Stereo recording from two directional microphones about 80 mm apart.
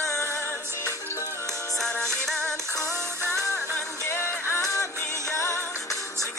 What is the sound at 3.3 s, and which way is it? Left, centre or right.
Music, left.